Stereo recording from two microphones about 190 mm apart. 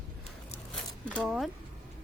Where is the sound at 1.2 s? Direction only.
Centre (ahead or behind).